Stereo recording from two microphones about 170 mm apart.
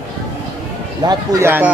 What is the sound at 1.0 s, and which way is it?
Speech, 20° right (ahead or behind).